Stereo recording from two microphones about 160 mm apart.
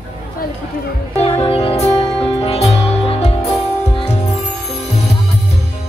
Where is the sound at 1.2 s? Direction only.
35° left (ahead or behind).